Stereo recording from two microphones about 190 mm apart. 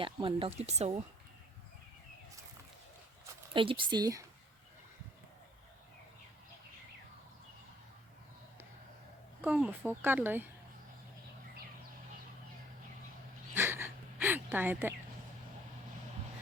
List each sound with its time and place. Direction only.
0.0 s speech: 25° right (ahead or behind)
3.5 s speech: 25° right (ahead or behind)
9.4 s speech: 10° right (ahead or behind)
13.5 s a sound: 10° right (ahead or behind)